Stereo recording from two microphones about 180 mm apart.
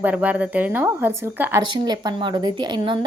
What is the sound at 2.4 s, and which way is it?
Speech, 25° right (ahead or behind).